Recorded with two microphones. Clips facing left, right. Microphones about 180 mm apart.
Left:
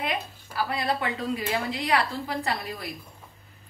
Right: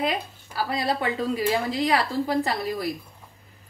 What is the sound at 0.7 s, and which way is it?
A woman's voice, 35° right (ahead or behind).